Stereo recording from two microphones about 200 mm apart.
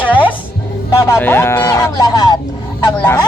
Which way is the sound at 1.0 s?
15° left (ahead or behind).